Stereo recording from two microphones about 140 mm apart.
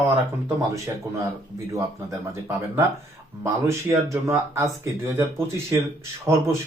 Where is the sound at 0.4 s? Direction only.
20° right (ahead or behind).